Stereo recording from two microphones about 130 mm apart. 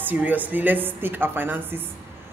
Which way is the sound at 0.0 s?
15° right (ahead or behind).